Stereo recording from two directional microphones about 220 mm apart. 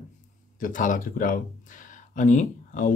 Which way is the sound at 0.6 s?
35° left (ahead or behind).